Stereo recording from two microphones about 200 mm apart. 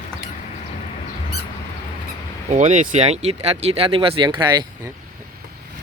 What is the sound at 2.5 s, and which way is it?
Speech, 35° right (ahead or behind).